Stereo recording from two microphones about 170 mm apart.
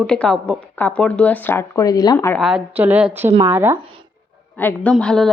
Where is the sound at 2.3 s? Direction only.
5° right (ahead or behind).